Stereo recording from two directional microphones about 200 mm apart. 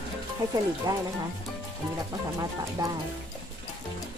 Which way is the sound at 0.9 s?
20° right (ahead or behind).